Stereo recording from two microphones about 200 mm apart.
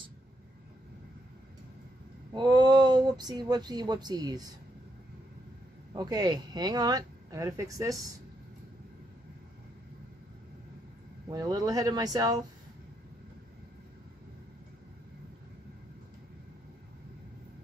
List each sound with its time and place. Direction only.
2.3 s speech: 20° right (ahead or behind)
5.9 s speech: 20° right (ahead or behind)
11.2 s speech: 20° right (ahead or behind)